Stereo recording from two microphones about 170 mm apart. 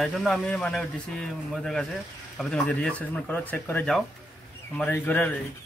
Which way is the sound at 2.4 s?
5° left (ahead or behind).